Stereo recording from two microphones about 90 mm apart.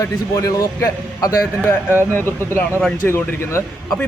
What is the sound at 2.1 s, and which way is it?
Speech, 25° left (ahead or behind).